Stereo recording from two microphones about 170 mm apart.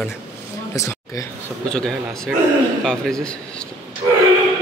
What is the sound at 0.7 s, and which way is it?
Speech, 20° left (ahead or behind).